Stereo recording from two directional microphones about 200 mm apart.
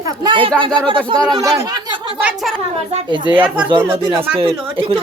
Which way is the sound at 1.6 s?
20° right (ahead or behind).